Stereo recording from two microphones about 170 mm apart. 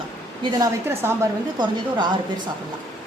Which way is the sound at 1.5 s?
25° right (ahead or behind).